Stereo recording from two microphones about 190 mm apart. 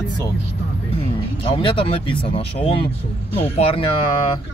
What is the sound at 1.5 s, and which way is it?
Speech, 25° left (ahead or behind).